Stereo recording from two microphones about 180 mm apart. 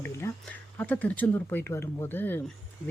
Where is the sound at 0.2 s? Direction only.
15° left (ahead or behind).